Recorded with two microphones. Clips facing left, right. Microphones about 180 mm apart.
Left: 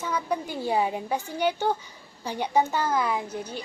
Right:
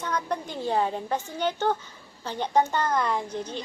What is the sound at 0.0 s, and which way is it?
A woman's voice, 5° left (ahead or behind).